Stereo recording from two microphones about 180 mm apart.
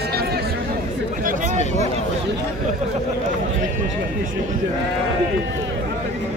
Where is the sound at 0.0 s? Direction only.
60° right (ahead or behind).